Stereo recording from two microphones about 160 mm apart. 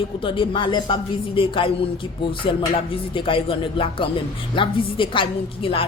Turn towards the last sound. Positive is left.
turn(degrees=35)  # may be behind; listen again after turning